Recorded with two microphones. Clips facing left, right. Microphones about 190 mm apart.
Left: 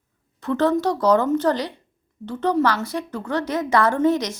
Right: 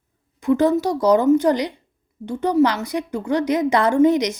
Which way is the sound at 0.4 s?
10° right (ahead or behind).